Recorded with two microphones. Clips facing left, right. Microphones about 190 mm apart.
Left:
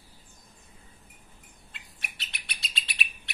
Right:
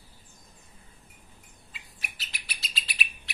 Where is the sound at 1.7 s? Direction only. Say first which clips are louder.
Even; centre (ahead or behind).